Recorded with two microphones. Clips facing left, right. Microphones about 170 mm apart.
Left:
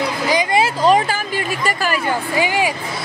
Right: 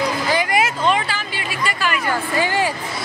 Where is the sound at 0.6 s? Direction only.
40° left (ahead or behind).